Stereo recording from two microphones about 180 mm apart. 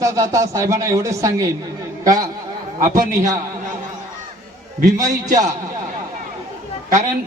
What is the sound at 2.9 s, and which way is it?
Speech, 45° right (ahead or behind).